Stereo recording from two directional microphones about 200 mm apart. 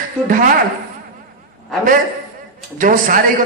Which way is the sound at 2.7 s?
40° right (ahead or behind).